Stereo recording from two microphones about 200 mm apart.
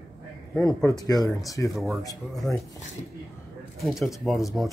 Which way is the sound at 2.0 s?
15° left (ahead or behind).